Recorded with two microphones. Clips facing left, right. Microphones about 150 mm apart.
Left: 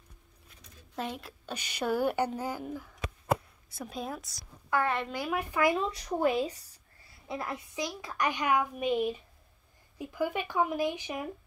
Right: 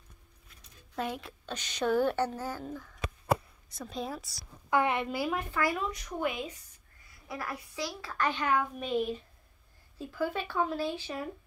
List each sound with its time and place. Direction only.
0.9 s a woman's voice: centre (ahead or behind)
4.6 s a woman's voice: 15° right (ahead or behind)
5.3 s a woman's voice: 20° left (ahead or behind)
5.9 s a woman's voice: 35° left (ahead or behind); by 8.9 s 15° left (ahead or behind)
9.9 s speech: 15° left (ahead or behind)